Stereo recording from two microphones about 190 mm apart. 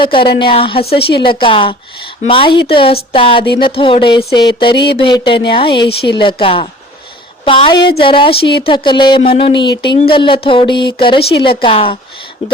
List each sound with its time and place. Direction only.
0.0 s a woman's voice: 25° left (ahead or behind)
7.8 s speech: 55° left (ahead or behind)
8.0 s a woman's voice: 25° left (ahead or behind)